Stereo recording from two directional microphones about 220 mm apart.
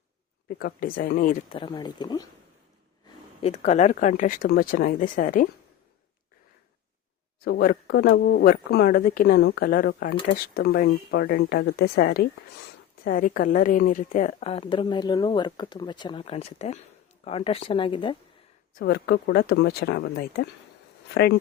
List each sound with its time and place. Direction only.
0.4 s speech: 40° left (ahead or behind)
1.5 s a woman's voice: 20° left (ahead or behind)
3.4 s speech: 30° left (ahead or behind)
7.4 s a woman's voice: 45° left (ahead or behind); by 18.2 s 20° left (ahead or behind)
18.7 s speech: 45° left (ahead or behind)